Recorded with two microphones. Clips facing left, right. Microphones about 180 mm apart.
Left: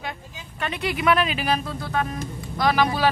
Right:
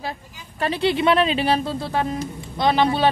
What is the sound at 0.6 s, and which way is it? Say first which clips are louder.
Speech: right 7 dB; 30° right (ahead or behind).